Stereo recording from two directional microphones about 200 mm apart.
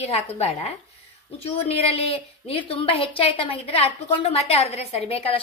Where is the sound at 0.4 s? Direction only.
30° left (ahead or behind).